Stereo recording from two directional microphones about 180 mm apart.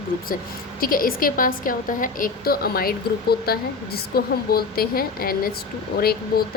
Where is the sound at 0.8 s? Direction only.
55° left (ahead or behind).